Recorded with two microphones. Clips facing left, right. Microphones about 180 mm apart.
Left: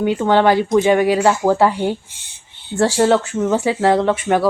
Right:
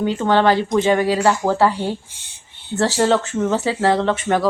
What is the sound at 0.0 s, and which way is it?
Speech, 15° left (ahead or behind).